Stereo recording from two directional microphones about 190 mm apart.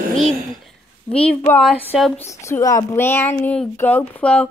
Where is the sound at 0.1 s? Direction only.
Centre (ahead or behind).